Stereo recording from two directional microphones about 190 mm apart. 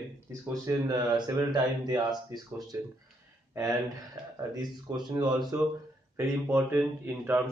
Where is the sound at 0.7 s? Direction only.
20° right (ahead or behind).